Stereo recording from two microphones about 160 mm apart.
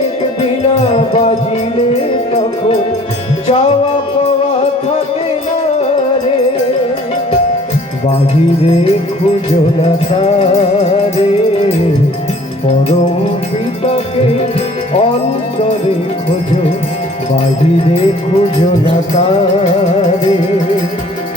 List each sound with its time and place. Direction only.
0.9 s music: 40° left (ahead or behind)
8.6 s music: 40° left (ahead or behind)
10.1 s music: 40° left (ahead or behind)
17.8 s music: 35° left (ahead or behind)